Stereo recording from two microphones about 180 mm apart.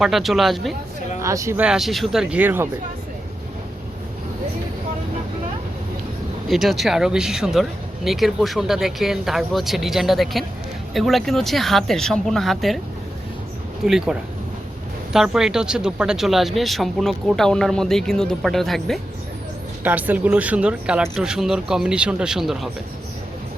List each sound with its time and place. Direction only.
0.0 s speech: centre (ahead or behind)
1.2 s speech: 15° right (ahead or behind)
6.5 s speech: centre (ahead or behind)
13.8 s speech: 5° right (ahead or behind)
19.8 s speech: 10° right (ahead or behind)